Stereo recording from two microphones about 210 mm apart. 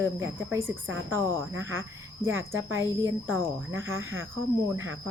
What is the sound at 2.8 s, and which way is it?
Speech, 15° right (ahead or behind).